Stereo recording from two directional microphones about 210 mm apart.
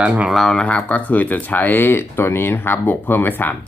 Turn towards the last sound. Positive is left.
turn(degrees=10)  # may be behind; listen again after turning